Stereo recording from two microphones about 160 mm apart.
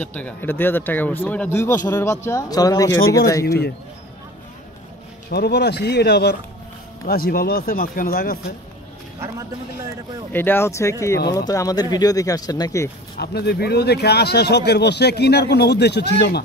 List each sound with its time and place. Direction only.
0.0 s speech: 10° left (ahead or behind)
5.3 s a man's voice: 90° left
7.1 s speech: 70° left (ahead or behind)
10.3 s speech: 15° left (ahead or behind)
13.2 s a man's voice: 90° left